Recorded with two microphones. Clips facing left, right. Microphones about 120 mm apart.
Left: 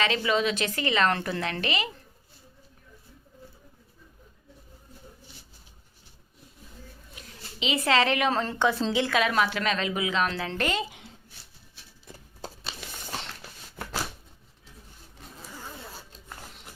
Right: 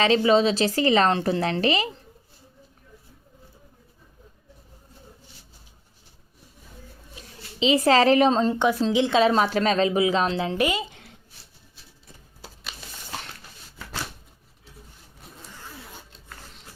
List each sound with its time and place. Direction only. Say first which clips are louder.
0.0 s a woman's voice: right 7 dB; 30° right (ahead or behind)
7.2 s a sound: right 9 dB; 30° right (ahead or behind)
8.3 s a woman's voice: right 4 dB; 20° right (ahead or behind)
9.1 s a woman's voice: right 7 dB; 30° right (ahead or behind)
10.6 s a woman's voice: right 3 dB; 10° right (ahead or behind)
13.8 s a sound: left 4 dB; 60° left (ahead or behind)